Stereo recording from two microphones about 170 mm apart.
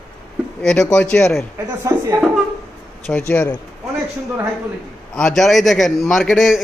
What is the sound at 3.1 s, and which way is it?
Speech, 15° left (ahead or behind).